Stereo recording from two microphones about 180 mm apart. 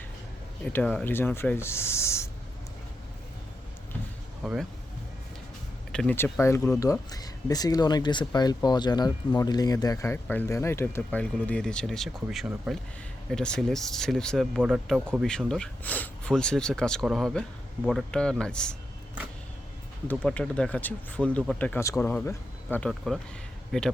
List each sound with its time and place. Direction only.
0.6 s speech: 5° left (ahead or behind)
5.9 s speech: 5° left (ahead or behind)
20.1 s speech: 5° left (ahead or behind)